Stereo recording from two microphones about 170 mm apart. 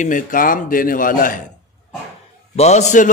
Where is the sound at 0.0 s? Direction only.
50° left (ahead or behind).